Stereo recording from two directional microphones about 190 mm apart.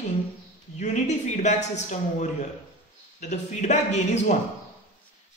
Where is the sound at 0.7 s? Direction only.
40° left (ahead or behind).